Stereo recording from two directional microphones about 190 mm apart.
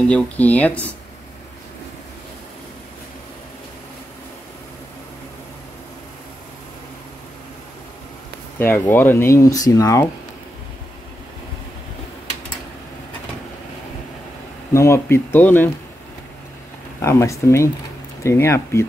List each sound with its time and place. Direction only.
0.1 s speech: 10° left (ahead or behind)
8.5 s speech: 10° left (ahead or behind)
14.7 s speech: 15° left (ahead or behind)
17.0 s speech: 15° left (ahead or behind)